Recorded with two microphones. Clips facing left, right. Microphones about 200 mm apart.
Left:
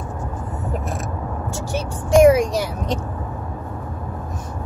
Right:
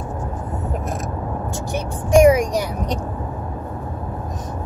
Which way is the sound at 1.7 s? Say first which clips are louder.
Right 1 dB; 15° right (ahead or behind).